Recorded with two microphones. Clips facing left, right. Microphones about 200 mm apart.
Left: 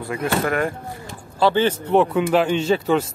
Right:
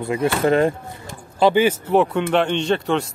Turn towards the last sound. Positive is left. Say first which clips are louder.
# left 1 dB
turn(degrees=5)  # may be behind; listen again after turning